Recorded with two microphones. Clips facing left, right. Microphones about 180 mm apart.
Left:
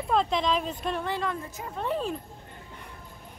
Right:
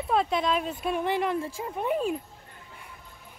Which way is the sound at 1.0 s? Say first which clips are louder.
Right 4 dB; 20° right (ahead or behind).